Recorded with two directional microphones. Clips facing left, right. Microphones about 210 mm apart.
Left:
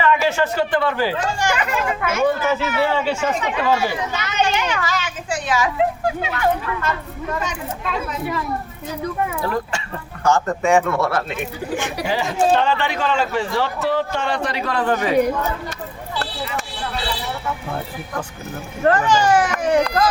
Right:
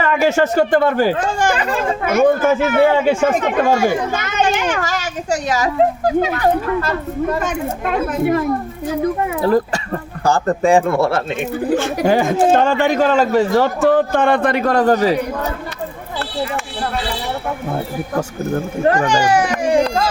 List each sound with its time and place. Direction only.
0.0 s speech: 45° right (ahead or behind)
1.5 s speech: 30° right (ahead or behind)
7.3 s speech: 50° right (ahead or behind)
9.4 s speech: 35° right (ahead or behind)
11.9 s speech: 50° right (ahead or behind)
18.8 s speech: 15° right (ahead or behind)
19.7 s speech: 30° right (ahead or behind)